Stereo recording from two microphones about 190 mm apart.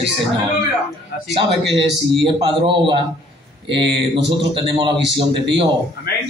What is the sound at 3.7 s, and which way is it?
Speech, 65° right (ahead or behind).